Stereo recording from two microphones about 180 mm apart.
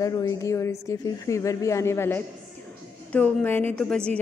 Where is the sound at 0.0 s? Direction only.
15° left (ahead or behind).